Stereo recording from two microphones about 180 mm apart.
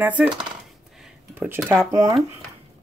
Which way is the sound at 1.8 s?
20° right (ahead or behind).